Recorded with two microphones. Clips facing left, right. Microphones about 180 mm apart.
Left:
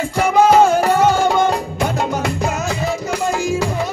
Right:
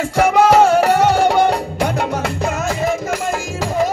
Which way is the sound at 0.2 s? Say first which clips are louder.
Even; 75° right (ahead or behind).